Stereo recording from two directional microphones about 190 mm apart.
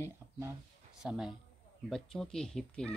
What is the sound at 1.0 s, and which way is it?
Speech, 5° right (ahead or behind).